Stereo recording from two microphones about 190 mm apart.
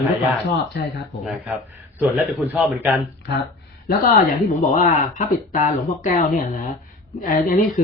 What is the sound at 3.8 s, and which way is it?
Speech, 55° left (ahead or behind).